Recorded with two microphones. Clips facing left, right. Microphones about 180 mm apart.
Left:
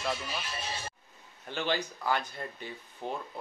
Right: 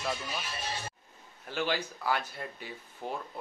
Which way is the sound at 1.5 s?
5° right (ahead or behind).